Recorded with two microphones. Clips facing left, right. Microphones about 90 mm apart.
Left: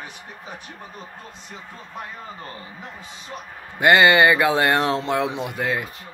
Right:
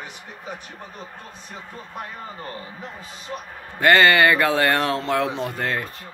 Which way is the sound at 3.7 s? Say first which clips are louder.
Left 1 dB; 15° left (ahead or behind).